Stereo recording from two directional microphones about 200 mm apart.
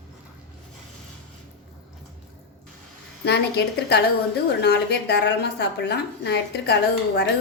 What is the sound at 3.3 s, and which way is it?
A woman's voice, 55° left (ahead or behind).